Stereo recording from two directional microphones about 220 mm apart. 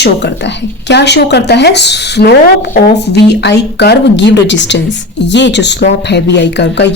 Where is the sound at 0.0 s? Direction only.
50° left (ahead or behind).